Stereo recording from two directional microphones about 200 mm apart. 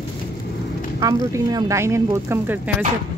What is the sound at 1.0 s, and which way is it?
Speech, 15° right (ahead or behind).